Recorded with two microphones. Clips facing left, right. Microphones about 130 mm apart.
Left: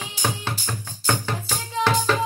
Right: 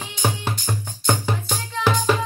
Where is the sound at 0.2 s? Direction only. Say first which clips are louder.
Right 3 dB; 20° right (ahead or behind).